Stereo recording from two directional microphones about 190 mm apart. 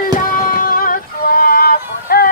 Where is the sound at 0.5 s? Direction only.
50° left (ahead or behind).